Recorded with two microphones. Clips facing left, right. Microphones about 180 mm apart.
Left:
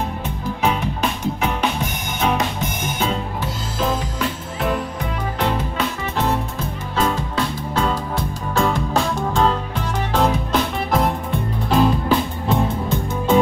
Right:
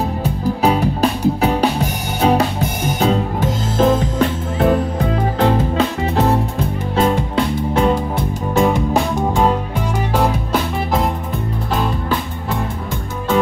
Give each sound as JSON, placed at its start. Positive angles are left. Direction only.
{"t": 0.2, "sound": "music", "side_deg": -35}
{"t": 4.6, "sound": "music", "side_deg": -30}